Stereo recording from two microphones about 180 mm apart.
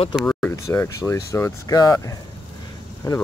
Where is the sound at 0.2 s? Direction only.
10° left (ahead or behind).